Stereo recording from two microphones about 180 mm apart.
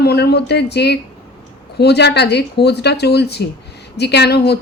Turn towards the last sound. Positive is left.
turn(degrees=65)  # may be behind; listen again after turning